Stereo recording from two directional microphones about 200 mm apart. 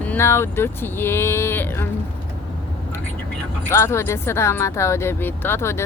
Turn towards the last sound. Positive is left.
turn(degrees=15)  # may be behind; listen again after turning